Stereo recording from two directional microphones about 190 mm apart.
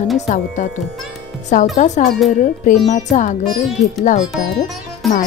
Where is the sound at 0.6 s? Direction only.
40° left (ahead or behind).